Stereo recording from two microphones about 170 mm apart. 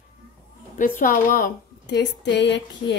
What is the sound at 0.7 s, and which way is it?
A woman's voice, 55° left (ahead or behind).